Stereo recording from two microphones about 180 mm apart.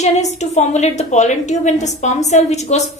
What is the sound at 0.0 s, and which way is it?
A woman's voice, 40° left (ahead or behind).